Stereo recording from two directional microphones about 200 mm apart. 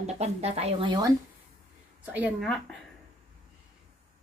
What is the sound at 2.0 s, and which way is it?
Speech, 10° right (ahead or behind).